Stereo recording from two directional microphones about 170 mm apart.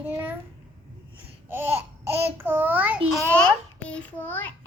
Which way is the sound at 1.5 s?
15° right (ahead or behind).